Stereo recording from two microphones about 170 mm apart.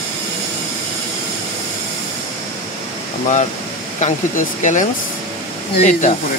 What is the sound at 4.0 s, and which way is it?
Speech, 45° left (ahead or behind).